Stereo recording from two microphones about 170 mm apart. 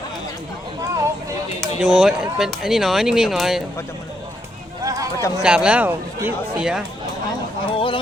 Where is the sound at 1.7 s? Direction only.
5° right (ahead or behind).